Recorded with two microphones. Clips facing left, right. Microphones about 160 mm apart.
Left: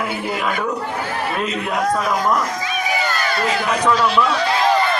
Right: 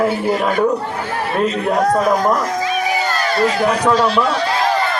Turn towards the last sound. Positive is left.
turn(degrees=-35)  # may be behind; listen again after turning